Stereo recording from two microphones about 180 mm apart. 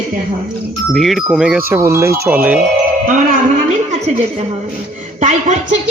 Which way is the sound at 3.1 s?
45° right (ahead or behind).